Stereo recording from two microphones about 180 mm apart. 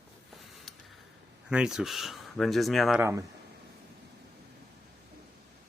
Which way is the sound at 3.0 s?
15° right (ahead or behind).